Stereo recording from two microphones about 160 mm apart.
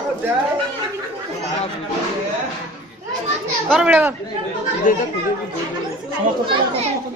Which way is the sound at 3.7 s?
5° right (ahead or behind).